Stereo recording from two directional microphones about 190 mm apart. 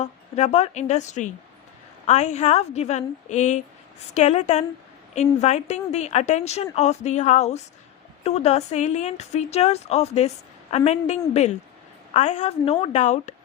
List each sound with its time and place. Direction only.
0.0 s a woman's voice: 35° left (ahead or behind)